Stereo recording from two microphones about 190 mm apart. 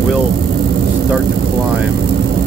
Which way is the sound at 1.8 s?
55° right (ahead or behind).